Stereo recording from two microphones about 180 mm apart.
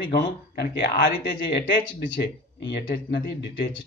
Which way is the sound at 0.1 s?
65° left (ahead or behind).